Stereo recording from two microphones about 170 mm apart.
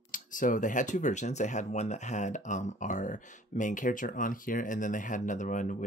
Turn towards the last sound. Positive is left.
turn(degrees=50)  # may be behind; listen again after turning